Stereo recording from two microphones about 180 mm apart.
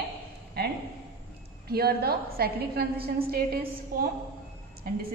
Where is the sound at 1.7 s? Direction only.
60° right (ahead or behind).